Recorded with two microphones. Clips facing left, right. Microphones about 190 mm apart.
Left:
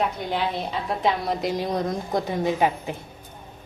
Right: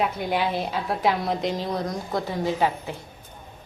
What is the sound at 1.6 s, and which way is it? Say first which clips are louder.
A woman's voice: left 2 dB; 20° left (ahead or behind).